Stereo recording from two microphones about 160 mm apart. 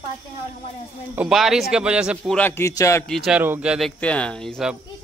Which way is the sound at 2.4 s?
15° left (ahead or behind).